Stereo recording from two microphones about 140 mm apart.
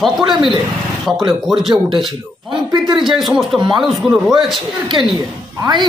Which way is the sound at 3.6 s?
35° right (ahead or behind).